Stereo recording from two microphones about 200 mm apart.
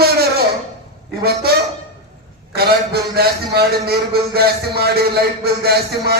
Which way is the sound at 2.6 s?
50° right (ahead or behind).